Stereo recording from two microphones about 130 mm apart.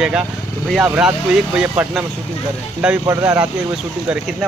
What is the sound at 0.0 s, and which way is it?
Speech, 5° right (ahead or behind).